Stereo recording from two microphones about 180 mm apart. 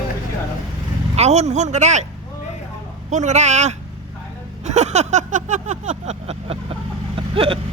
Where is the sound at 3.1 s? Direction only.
40° right (ahead or behind).